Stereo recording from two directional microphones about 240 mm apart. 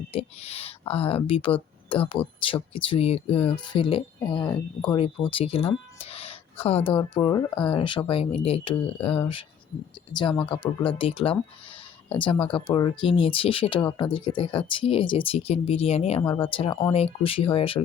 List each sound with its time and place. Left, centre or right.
0.1 s speech: left